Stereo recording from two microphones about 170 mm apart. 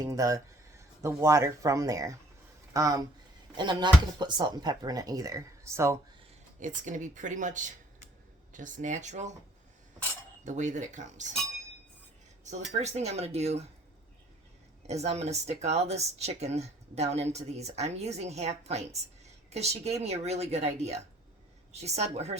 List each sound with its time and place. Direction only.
0.0 s speech: 20° right (ahead or behind)
6.6 s speech: 50° right (ahead or behind)
10.4 s speech: 45° right (ahead or behind)
12.7 s speech: 40° right (ahead or behind)
14.8 s speech: 40° right (ahead or behind)